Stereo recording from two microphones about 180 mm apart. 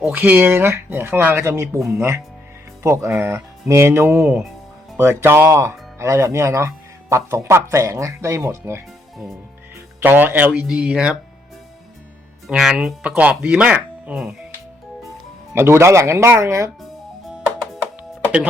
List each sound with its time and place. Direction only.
0.0 s speech: 10° right (ahead or behind)
4.9 s speech: 15° right (ahead or behind)
9.1 s music: centre (ahead or behind)
10.0 s speech: 10° right (ahead or behind)
12.5 s speech: 5° right (ahead or behind)
15.5 s speech: 15° right (ahead or behind)